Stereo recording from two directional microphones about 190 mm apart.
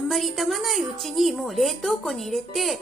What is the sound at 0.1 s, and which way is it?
A woman's voice, centre (ahead or behind).